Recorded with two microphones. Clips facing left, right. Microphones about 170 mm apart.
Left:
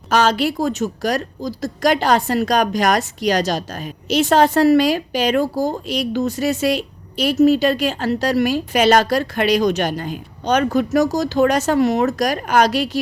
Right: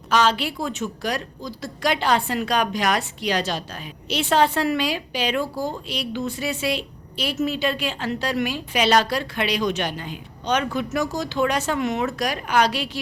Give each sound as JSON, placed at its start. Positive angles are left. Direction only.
{"t": 0.1, "sound": "a woman's voice", "side_deg": 45}